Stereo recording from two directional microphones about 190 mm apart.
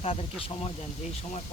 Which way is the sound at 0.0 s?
30° left (ahead or behind).